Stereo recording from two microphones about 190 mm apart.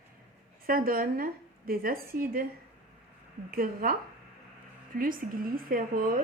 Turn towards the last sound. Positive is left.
turn(degrees=-45)  # may be behind; listen again after turning